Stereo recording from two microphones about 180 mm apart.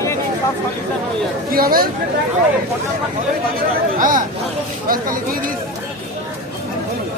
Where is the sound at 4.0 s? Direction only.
50° right (ahead or behind).